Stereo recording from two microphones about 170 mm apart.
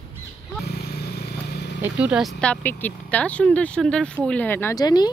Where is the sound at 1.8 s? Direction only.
5° right (ahead or behind); by 4.7 s 10° left (ahead or behind).